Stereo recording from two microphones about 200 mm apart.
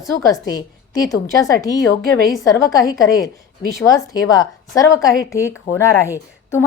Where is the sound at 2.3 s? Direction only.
15° left (ahead or behind).